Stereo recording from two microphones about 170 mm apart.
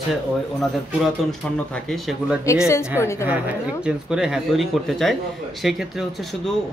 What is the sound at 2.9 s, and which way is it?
Speech, 15° left (ahead or behind).